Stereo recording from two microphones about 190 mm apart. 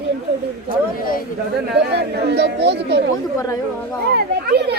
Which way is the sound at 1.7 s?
65° right (ahead or behind).